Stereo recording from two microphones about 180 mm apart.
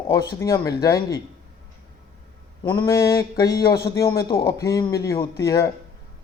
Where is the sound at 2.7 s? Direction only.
15° left (ahead or behind).